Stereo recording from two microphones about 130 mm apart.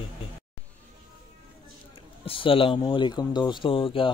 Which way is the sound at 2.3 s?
45° left (ahead or behind).